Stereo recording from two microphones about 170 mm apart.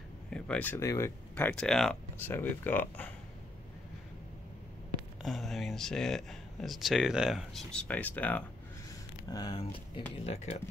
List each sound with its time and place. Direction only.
0.3 s speech: 5° left (ahead or behind)
5.2 s speech: centre (ahead or behind)
9.3 s speech: 25° left (ahead or behind)